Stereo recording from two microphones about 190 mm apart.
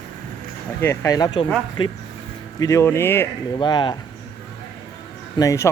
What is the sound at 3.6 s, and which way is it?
Speech, 25° left (ahead or behind).